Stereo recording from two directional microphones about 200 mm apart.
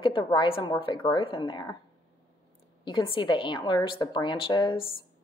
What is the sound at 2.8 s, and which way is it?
A woman's voice, 25° left (ahead or behind).